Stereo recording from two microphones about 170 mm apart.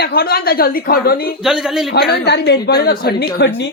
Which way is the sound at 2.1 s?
80° left.